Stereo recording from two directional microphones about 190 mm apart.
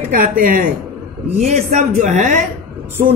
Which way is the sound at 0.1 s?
45° right (ahead or behind).